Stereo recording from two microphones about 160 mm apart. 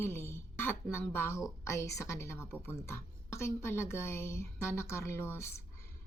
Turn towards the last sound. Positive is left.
turn(degrees=15)  # may be behind; listen again after turning